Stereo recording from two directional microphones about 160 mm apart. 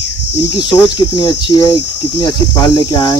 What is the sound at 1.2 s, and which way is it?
Speech, 30° left (ahead or behind).